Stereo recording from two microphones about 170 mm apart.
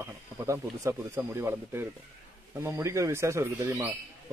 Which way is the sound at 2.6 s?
15° right (ahead or behind).